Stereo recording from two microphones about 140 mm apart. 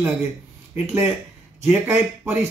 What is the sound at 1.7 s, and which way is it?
Speech, 10° right (ahead or behind).